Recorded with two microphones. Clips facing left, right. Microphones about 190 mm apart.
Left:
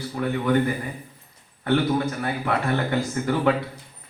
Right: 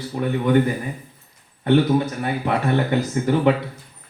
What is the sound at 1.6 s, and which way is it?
Speech, 20° right (ahead or behind).